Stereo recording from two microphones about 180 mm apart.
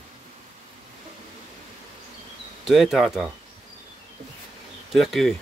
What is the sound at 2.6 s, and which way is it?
Speech, centre (ahead or behind).